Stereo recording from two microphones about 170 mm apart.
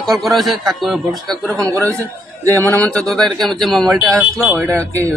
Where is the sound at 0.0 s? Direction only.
Centre (ahead or behind).